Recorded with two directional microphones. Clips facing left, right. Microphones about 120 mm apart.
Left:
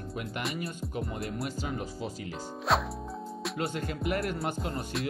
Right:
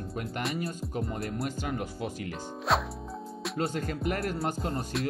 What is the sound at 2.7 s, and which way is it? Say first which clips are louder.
Music: even; centre (ahead or behind).